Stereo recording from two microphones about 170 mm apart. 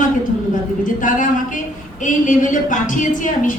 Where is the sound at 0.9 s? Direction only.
50° left (ahead or behind).